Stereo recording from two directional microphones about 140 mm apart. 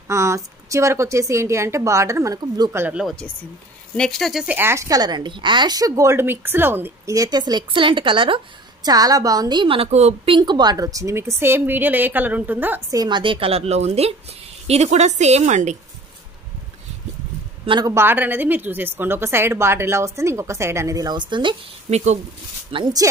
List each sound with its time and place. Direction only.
0.1 s a woman's voice: 20° right (ahead or behind)
2.8 s a woman's voice: 5° right (ahead or behind)
3.9 s speech: 5° left (ahead or behind)
4.6 s a woman's voice: 20° right (ahead or behind); by 8.4 s 35° right (ahead or behind)
8.8 s a woman's voice: 25° right (ahead or behind); by 10.3 s 50° right (ahead or behind)
10.3 s a woman's voice: 30° right (ahead or behind); by 12.8 s 15° right (ahead or behind)
12.9 s a woman's voice: 30° right (ahead or behind); by 15.8 s 55° right (ahead or behind)
17.6 s a woman's voice: 30° right (ahead or behind)
17.9 s a woman's voice: 15° right (ahead or behind); by 21.5 s 35° right (ahead or behind)
21.9 s a woman's voice: 55° right (ahead or behind)
22.7 s speech: 35° right (ahead or behind)